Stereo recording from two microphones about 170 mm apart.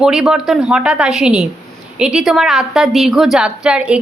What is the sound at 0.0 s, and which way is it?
A woman's voice, 5° right (ahead or behind).